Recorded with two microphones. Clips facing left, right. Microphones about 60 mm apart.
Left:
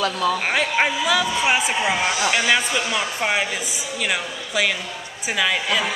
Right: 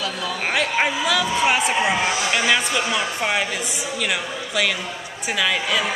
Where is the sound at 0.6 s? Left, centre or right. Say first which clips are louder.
Even; centre.